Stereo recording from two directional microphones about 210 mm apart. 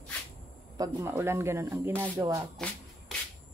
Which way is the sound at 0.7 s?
15° right (ahead or behind).